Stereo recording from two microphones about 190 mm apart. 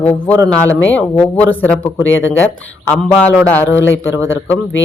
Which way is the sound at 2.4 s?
10° left (ahead or behind).